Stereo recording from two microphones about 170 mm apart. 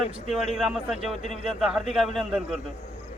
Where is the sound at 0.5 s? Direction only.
Centre (ahead or behind).